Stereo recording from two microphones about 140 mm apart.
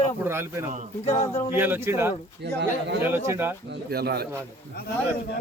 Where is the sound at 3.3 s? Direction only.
15° right (ahead or behind).